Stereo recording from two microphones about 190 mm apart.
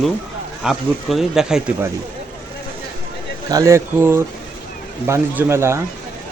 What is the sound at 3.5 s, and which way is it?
Speech, 15° right (ahead or behind).